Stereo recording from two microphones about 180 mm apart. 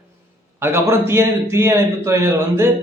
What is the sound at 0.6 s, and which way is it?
A man's voice, 15° right (ahead or behind).